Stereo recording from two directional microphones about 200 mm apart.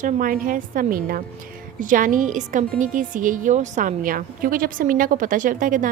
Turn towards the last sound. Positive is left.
turn(degrees=-40)  # may be behind; listen again after turning